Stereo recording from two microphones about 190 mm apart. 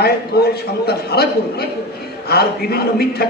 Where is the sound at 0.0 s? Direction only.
55° left (ahead or behind).